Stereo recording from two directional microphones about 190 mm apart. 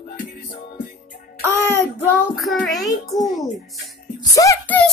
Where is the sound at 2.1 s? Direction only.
Centre (ahead or behind).